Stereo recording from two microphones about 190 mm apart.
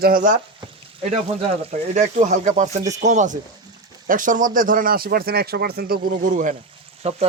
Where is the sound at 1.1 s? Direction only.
35° right (ahead or behind).